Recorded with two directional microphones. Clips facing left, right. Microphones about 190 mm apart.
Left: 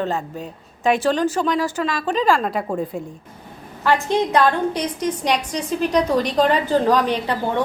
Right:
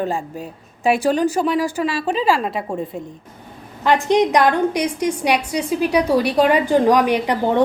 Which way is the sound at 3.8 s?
15° right (ahead or behind).